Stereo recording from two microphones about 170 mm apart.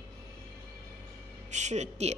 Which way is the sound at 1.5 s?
45° right (ahead or behind).